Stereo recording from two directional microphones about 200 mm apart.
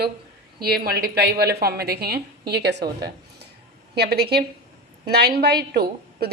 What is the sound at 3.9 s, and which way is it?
A woman's voice, 55° right (ahead or behind).